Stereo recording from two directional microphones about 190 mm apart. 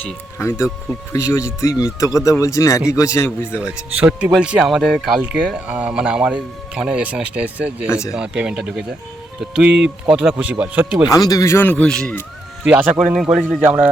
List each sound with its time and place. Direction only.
0.3 s speech: 15° left (ahead or behind)
3.5 s speech: 5° right (ahead or behind)
11.1 s speech: 20° left (ahead or behind)
12.6 s speech: 10° right (ahead or behind)